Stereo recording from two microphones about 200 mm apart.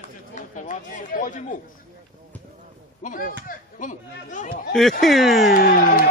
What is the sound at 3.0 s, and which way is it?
Speech, 40° left (ahead or behind).